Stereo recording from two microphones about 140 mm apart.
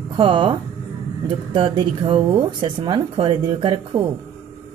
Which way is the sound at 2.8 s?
40° right (ahead or behind).